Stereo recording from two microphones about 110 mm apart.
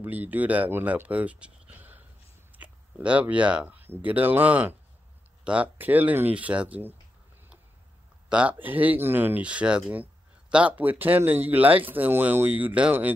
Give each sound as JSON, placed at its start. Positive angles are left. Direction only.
{"t": 0.0, "sound": "speech", "side_deg": -15}
{"t": 8.3, "sound": "speech", "side_deg": -10}